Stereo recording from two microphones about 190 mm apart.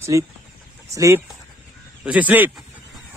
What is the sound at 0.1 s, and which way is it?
Speech, 15° right (ahead or behind).